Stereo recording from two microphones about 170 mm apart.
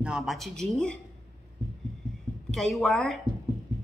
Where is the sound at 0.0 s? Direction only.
5° right (ahead or behind).